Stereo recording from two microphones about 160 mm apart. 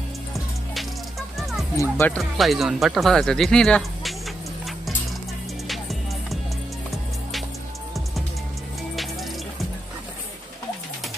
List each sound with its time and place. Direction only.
1.4 s music: centre (ahead or behind)
1.8 s speech: 15° left (ahead or behind)
2.1 s speech: centre (ahead or behind)